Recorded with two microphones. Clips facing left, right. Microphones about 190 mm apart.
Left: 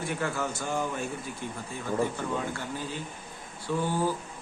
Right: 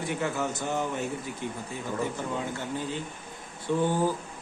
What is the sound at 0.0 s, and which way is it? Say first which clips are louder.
Speech: right 1 dB; 20° right (ahead or behind).